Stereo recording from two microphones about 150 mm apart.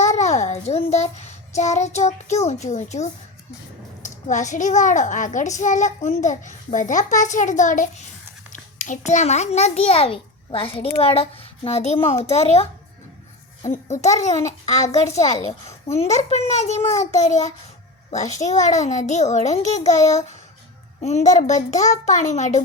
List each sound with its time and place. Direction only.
0.0 s a child's voice: 50° left (ahead or behind)
18.4 s a child's voice: 50° left (ahead or behind)
21.0 s a child's voice: 45° left (ahead or behind)